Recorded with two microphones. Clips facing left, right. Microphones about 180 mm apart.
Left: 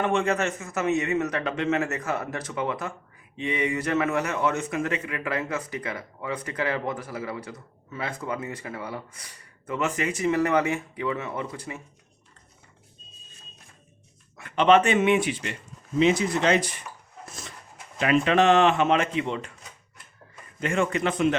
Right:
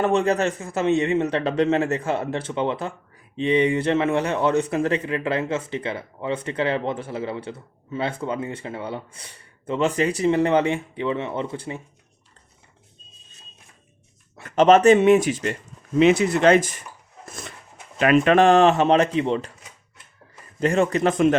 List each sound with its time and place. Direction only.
0.0 s a man's voice: 35° right (ahead or behind)
14.3 s a man's voice: 45° right (ahead or behind)
16.0 s speech: 60° right (ahead or behind); by 16.8 s 45° right (ahead or behind)
18.0 s a man's voice: 55° right (ahead or behind); by 19.5 s 35° right (ahead or behind)
20.6 s a man's voice: 40° right (ahead or behind)